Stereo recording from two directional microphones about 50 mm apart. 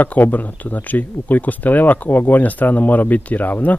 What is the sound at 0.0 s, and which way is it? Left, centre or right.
Speech, left.